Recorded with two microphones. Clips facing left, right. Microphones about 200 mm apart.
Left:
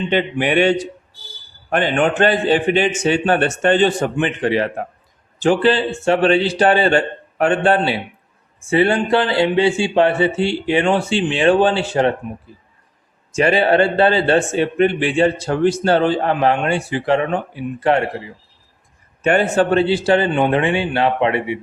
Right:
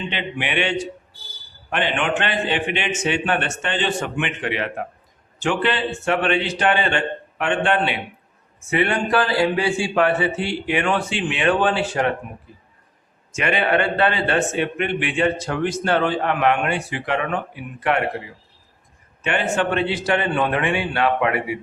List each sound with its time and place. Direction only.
0.1 s a man's voice: 45° left (ahead or behind)
13.3 s a man's voice: 35° left (ahead or behind)
19.2 s speech: 40° left (ahead or behind); by 21.6 s 25° left (ahead or behind)